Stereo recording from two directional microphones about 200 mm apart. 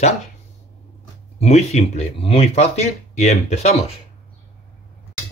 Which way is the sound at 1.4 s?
35° left (ahead or behind).